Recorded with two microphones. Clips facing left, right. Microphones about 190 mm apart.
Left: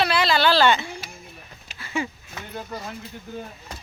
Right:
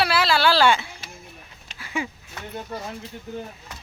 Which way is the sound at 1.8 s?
10° right (ahead or behind).